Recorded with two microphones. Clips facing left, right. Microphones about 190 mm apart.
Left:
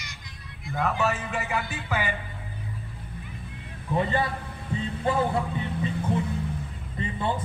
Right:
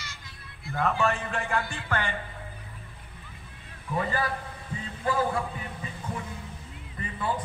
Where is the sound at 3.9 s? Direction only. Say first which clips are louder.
Left 3 dB; 25° left (ahead or behind).